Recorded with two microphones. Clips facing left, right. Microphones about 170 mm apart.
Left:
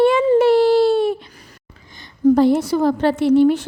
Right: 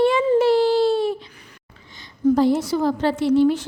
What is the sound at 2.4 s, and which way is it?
A woman's voice, 60° left (ahead or behind).